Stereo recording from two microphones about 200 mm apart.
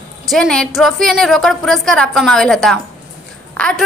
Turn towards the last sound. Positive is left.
turn(degrees=5)  # may be behind; listen again after turning